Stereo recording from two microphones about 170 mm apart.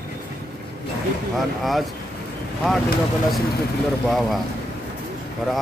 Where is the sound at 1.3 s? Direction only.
Centre (ahead or behind).